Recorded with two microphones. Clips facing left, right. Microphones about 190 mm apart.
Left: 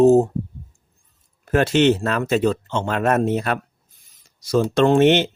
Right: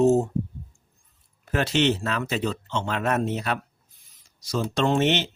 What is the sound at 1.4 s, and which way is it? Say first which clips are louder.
Speech: left 6 dB; 50° left (ahead or behind).